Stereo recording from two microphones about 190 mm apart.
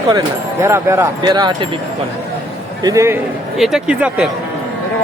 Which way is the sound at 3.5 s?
Centre (ahead or behind).